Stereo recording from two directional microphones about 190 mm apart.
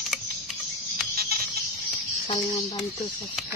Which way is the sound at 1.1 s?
55° right (ahead or behind).